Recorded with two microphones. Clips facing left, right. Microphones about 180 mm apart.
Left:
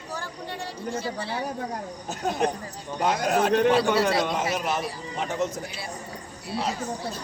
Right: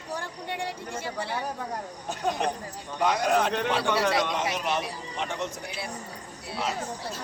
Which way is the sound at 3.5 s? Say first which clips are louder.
Left 7 dB; 45° left (ahead or behind).